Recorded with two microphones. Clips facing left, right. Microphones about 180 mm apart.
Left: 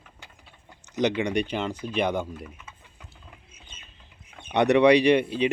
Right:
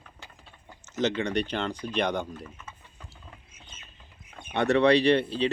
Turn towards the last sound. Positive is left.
turn(degrees=15)  # may be behind; listen again after turning